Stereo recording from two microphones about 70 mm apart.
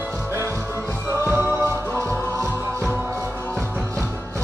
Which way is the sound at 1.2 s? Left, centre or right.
Right.